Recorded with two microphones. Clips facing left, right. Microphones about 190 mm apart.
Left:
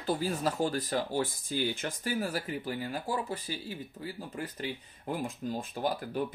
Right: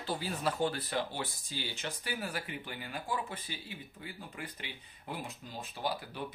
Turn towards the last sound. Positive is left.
turn(degrees=45)  # may be behind; listen again after turning